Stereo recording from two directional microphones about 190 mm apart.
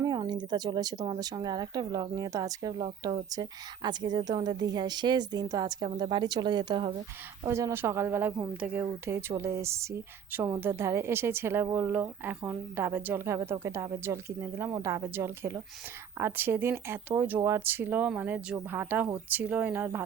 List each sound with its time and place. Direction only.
0.0 s a woman's voice: 20° right (ahead or behind)